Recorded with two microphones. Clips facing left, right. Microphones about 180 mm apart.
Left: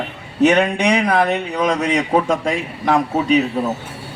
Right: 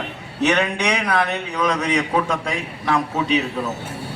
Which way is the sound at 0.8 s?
50° left (ahead or behind).